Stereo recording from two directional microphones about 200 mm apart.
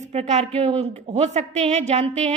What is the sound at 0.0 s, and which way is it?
A woman's voice, 35° right (ahead or behind).